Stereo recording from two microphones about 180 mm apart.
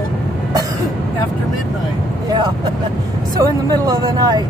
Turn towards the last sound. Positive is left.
turn(degrees=-20)  # may be behind; listen again after turning